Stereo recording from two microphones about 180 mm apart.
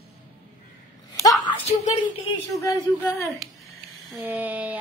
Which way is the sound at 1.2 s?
25° left (ahead or behind).